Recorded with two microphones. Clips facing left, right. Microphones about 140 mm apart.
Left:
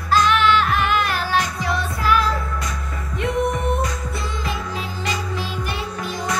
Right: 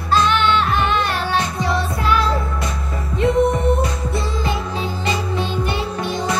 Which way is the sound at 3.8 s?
30° right (ahead or behind).